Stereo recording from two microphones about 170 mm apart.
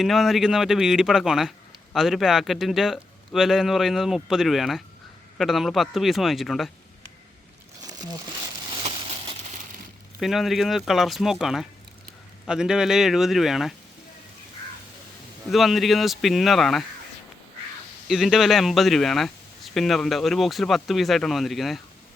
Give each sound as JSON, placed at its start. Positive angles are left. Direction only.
{"t": 0.0, "sound": "a man's voice", "side_deg": 0}
{"t": 8.8, "sound": "crushing", "side_deg": -30}
{"t": 10.2, "sound": "a man's voice", "side_deg": 0}
{"t": 15.4, "sound": "a man's voice", "side_deg": 0}
{"t": 18.1, "sound": "a man's voice", "side_deg": 0}